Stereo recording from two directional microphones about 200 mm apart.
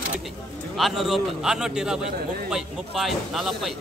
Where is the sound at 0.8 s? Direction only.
Centre (ahead or behind).